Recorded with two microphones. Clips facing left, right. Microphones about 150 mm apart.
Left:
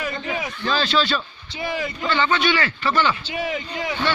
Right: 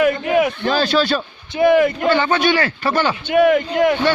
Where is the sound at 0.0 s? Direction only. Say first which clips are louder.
Right 12 dB; 60° right (ahead or behind).